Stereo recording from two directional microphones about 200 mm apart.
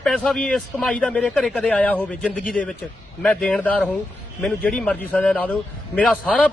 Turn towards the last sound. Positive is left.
turn(degrees=5)  # may be behind; listen again after turning